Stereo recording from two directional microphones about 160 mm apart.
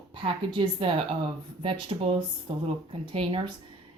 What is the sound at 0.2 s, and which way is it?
Speech, 30° right (ahead or behind).